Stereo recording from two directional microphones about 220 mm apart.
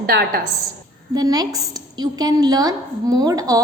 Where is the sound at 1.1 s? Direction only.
15° right (ahead or behind).